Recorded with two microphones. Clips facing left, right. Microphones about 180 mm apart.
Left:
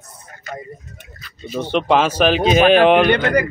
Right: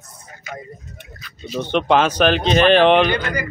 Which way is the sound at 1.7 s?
5° left (ahead or behind).